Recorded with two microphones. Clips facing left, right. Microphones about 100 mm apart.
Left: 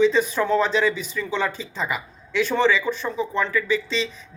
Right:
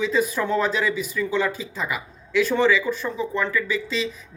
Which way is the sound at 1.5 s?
5° right (ahead or behind).